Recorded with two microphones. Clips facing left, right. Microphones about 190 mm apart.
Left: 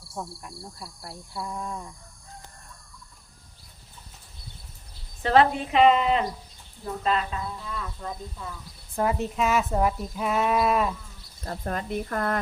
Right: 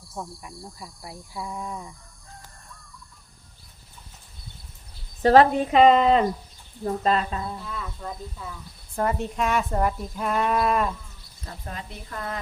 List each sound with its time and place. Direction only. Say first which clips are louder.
0.1 s cricket: even; 10° left (ahead or behind)
0.6 s speech: right 1 dB; 15° right (ahead or behind)
5.2 s speech: right 4 dB; 40° right (ahead or behind)
7.7 s speech: even; 5° right (ahead or behind)
11.4 s speech: left 7 dB; 50° left (ahead or behind)